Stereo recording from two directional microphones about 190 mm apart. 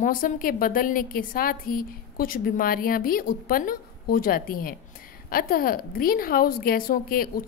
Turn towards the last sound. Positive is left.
turn(degrees=50)  # may be behind; listen again after turning